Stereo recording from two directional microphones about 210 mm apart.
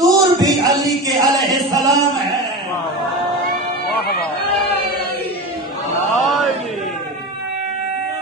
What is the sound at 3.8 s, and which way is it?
Music, 50° left (ahead or behind).